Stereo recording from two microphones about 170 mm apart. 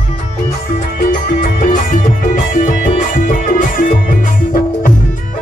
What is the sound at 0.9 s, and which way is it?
Music, 55° left (ahead or behind).